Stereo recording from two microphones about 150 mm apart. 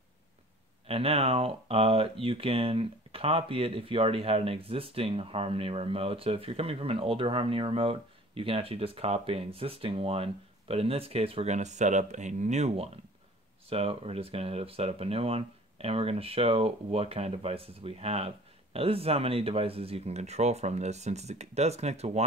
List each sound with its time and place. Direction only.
0.8 s speech: 40° right (ahead or behind)